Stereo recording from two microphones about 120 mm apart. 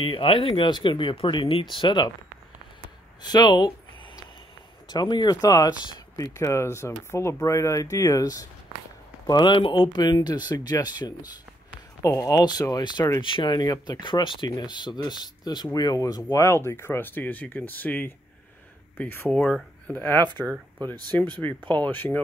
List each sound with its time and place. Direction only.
0.0 s speech: 50° left (ahead or behind)
3.2 s speech: 35° left (ahead or behind)
4.8 s speech: 35° left (ahead or behind); by 20.2 s 15° left (ahead or behind)
20.2 s speech: 35° right (ahead or behind)
21.1 s speech: 15° left (ahead or behind)